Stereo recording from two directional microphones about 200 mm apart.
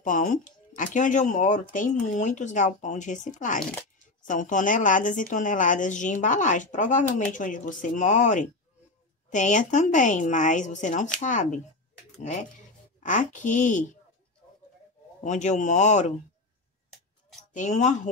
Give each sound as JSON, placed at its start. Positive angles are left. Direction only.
{"t": 0.0, "sound": "speech", "side_deg": 40}
{"t": 15.2, "sound": "speech", "side_deg": 35}
{"t": 17.5, "sound": "speech", "side_deg": 35}